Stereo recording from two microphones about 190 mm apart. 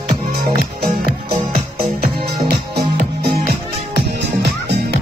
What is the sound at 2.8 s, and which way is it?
Music, 50° right (ahead or behind).